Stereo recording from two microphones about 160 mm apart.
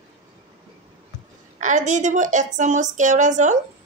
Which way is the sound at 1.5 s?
50° right (ahead or behind).